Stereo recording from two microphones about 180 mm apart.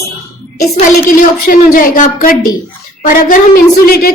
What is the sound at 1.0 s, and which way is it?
A woman's voice, 50° left (ahead or behind).